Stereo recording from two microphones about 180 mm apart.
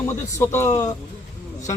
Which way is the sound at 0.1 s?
15° left (ahead or behind).